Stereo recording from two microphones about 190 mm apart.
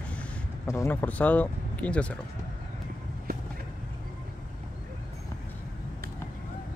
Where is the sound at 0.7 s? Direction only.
10° left (ahead or behind).